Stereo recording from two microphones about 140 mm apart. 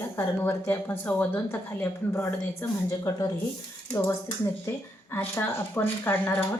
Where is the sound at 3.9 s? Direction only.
20° left (ahead or behind).